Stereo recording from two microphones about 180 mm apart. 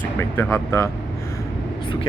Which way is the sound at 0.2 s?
15° left (ahead or behind).